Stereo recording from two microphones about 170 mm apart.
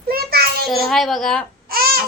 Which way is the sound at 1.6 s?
60° right (ahead or behind).